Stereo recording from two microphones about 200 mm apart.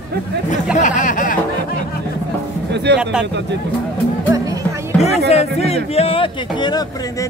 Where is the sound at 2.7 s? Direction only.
60° right (ahead or behind).